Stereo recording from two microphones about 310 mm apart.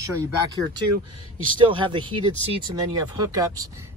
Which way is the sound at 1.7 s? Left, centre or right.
Centre.